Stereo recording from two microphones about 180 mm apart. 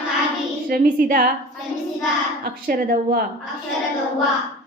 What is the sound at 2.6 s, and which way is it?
Speech, 55° right (ahead or behind).